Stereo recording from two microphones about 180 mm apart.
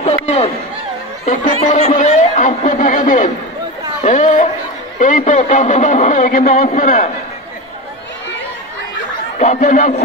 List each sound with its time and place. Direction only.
0.0 s a sound: 35° left (ahead or behind)
1.6 s a man's voice: 40° left (ahead or behind)
9.4 s a man's voice: 45° left (ahead or behind)